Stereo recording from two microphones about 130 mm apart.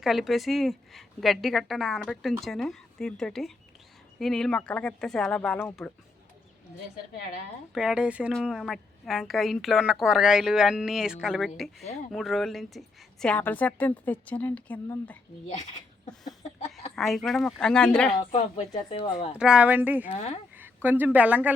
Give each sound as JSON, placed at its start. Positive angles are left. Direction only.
{"t": 0.0, "sound": "a woman's voice", "side_deg": 0}
{"t": 7.7, "sound": "a woman's voice", "side_deg": -5}
{"t": 16.9, "sound": "a woman's voice", "side_deg": 0}
{"t": 18.3, "sound": "speech", "side_deg": 60}
{"t": 18.9, "sound": "speech", "side_deg": 50}
{"t": 19.4, "sound": "speech", "side_deg": -5}
{"t": 20.1, "sound": "speech", "side_deg": 55}
{"t": 20.6, "sound": "speech", "side_deg": -15}